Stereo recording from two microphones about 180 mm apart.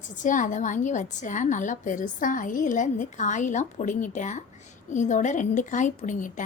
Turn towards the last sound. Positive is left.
turn(degrees=45)  # may be behind; listen again after turning